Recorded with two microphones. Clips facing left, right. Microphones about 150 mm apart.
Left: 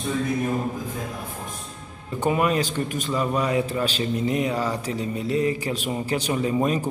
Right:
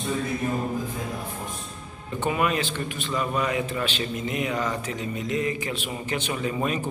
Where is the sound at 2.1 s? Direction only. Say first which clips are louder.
Left 3 dB; 35° left (ahead or behind).